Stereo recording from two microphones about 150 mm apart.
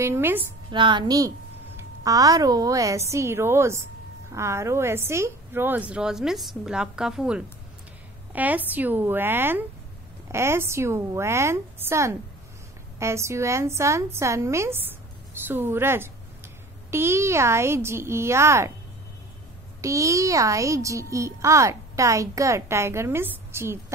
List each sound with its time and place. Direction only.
0.0 s a woman's voice: 15° right (ahead or behind)
0.7 s a woman's voice: 30° right (ahead or behind)
19.8 s a child's voice: 20° right (ahead or behind)